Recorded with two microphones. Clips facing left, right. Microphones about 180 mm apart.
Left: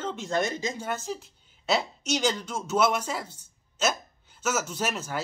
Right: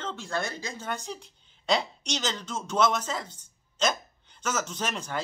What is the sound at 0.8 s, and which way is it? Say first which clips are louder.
A woman's voice: left 3 dB; 5° left (ahead or behind).